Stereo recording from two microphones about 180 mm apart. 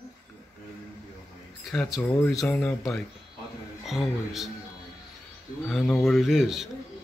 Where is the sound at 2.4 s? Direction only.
5° left (ahead or behind).